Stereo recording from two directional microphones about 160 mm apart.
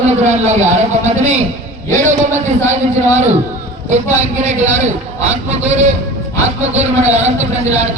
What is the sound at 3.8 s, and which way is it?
A man's voice, 45° right (ahead or behind).